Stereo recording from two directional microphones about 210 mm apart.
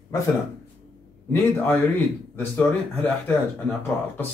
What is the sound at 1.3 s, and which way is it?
Speech, 10° left (ahead or behind).